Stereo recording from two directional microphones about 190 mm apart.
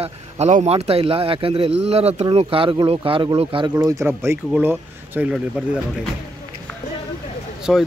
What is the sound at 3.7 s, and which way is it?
Speech, 15° right (ahead or behind).